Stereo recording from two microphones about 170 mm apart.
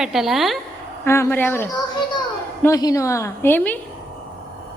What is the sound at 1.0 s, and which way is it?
A woman's voice, 15° left (ahead or behind).